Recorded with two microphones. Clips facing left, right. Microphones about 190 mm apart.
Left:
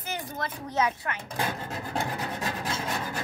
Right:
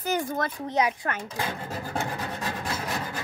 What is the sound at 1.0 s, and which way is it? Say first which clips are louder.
Speech: right 4 dB; 50° right (ahead or behind).